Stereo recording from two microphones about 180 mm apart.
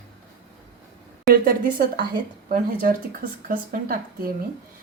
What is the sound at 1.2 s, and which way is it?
Speech, 55° right (ahead or behind).